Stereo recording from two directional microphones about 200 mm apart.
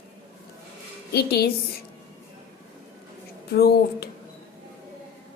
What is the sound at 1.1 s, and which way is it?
Speech, 50° left (ahead or behind).